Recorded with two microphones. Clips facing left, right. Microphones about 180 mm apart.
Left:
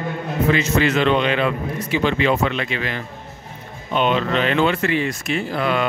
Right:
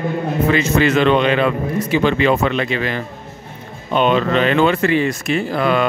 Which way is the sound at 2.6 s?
40° right (ahead or behind).